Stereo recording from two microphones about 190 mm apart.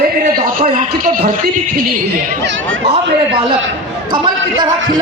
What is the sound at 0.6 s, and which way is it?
Speech, 35° right (ahead or behind).